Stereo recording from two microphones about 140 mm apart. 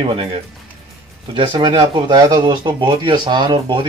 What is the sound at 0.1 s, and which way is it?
Speech, 35° right (ahead or behind).